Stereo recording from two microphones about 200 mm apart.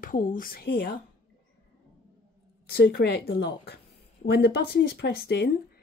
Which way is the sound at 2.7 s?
55° left (ahead or behind).